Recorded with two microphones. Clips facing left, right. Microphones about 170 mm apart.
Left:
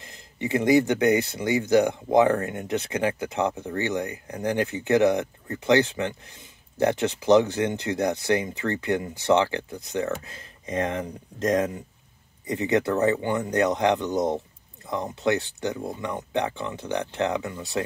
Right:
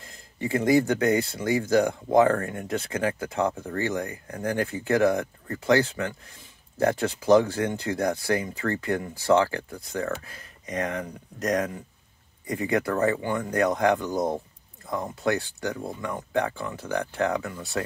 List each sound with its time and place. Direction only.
0.0 s speech: 20° left (ahead or behind)